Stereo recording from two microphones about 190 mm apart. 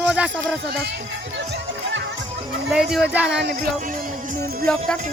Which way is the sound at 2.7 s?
5° right (ahead or behind).